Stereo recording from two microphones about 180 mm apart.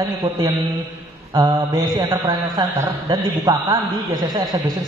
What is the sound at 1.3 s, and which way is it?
A man's voice, 20° right (ahead or behind).